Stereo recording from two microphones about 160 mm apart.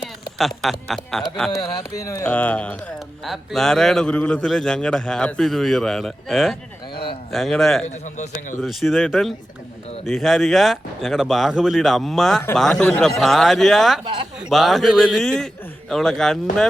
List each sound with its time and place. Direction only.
0.0 s speech: centre (ahead or behind)
2.0 s a man's voice: 20° left (ahead or behind); by 6.6 s centre (ahead or behind)
6.9 s a sound: 30° left (ahead or behind)
7.3 s a man's voice: centre (ahead or behind)
7.9 s a man's voice: 45° left (ahead or behind)
8.6 s a man's voice: centre (ahead or behind)
14.0 s speech: 30° right (ahead or behind)
14.5 s a man's voice: centre (ahead or behind)